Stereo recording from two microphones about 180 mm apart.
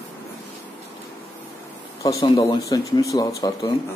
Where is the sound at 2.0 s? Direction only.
20° left (ahead or behind).